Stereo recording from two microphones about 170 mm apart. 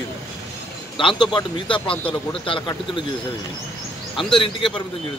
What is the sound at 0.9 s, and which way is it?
Speech, 30° left (ahead or behind).